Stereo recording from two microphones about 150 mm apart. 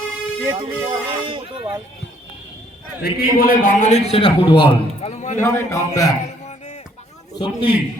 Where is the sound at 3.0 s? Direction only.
80° left; by 4.0 s 50° left (ahead or behind).